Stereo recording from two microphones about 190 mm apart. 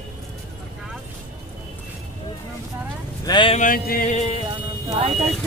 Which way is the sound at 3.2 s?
25° left (ahead or behind).